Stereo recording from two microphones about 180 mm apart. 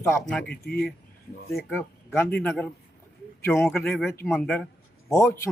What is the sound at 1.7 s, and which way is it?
A man's voice, 10° left (ahead or behind).